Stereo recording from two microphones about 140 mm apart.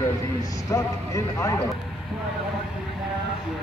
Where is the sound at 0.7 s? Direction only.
25° left (ahead or behind).